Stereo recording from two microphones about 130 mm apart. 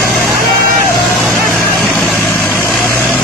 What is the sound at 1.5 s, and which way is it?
Vehicle, centre (ahead or behind).